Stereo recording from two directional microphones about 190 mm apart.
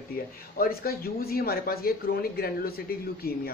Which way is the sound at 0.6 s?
50° left (ahead or behind).